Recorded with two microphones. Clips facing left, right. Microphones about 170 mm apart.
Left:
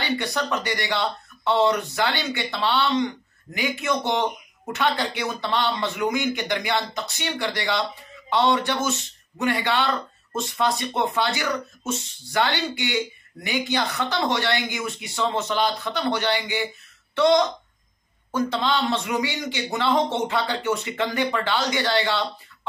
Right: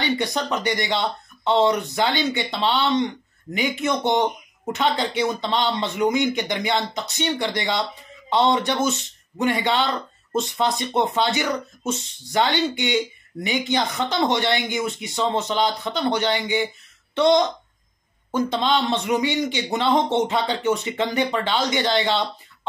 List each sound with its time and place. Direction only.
0.0 s speech: 20° right (ahead or behind)